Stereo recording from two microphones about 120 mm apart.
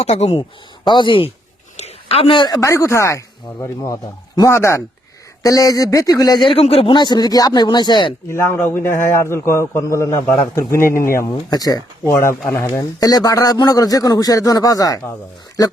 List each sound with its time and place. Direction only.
0.0 s speech: 60° left (ahead or behind)
0.9 s speech: 40° left (ahead or behind)
1.7 s a sound: 60° left (ahead or behind); by 2.6 s 45° left (ahead or behind)
2.6 s a man's voice: 25° left (ahead or behind)
8.3 s a man's voice: 20° left (ahead or behind)